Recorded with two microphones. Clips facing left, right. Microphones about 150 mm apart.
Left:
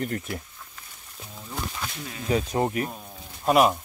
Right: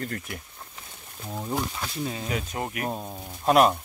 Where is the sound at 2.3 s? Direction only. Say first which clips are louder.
Left 7 dB; 35° left (ahead or behind).